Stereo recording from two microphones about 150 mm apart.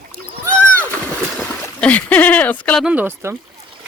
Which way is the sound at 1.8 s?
10° left (ahead or behind).